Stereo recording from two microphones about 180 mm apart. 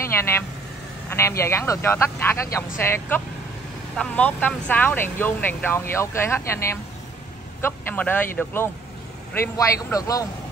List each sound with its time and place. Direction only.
0.0 s vehicle: 15° left (ahead or behind)
1.4 s speech: 15° left (ahead or behind)